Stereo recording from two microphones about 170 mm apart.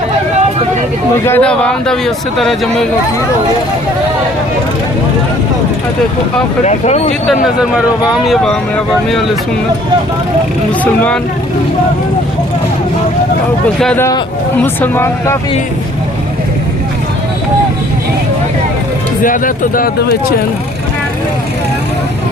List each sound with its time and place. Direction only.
1.2 s speech: 10° left (ahead or behind)
6.7 s speech: 40° left (ahead or behind)
8.1 s speech: centre (ahead or behind)
13.7 s speech: 5° left (ahead or behind)
19.2 s speech: 55° left (ahead or behind)